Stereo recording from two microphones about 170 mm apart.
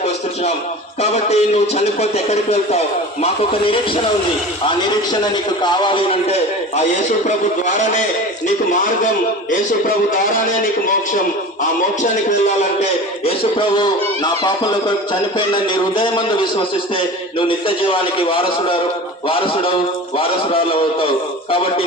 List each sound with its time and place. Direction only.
1.0 s a man's voice: 40° left (ahead or behind)
12.8 s a man's voice: 35° left (ahead or behind)
17.7 s a man's voice: 30° left (ahead or behind)